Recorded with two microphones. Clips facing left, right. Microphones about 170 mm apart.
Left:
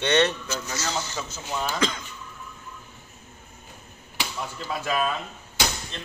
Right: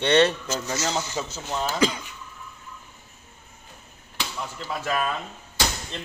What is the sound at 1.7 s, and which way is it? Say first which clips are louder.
Speech: right 5 dB; 10° right (ahead or behind).